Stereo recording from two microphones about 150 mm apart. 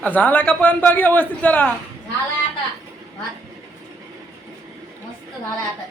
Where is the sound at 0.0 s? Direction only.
10° left (ahead or behind).